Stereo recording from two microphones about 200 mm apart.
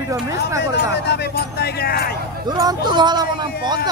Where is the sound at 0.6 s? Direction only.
55° left (ahead or behind).